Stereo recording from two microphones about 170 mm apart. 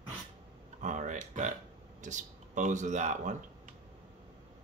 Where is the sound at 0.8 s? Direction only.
45° right (ahead or behind).